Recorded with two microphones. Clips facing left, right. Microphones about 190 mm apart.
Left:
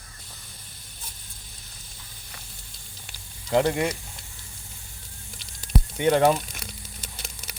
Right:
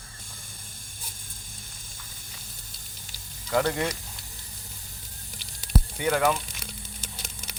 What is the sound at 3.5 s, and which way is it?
Speech, 20° left (ahead or behind).